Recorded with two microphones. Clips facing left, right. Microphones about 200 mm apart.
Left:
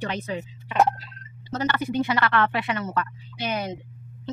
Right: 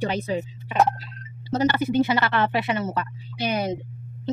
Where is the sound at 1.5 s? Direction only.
30° right (ahead or behind).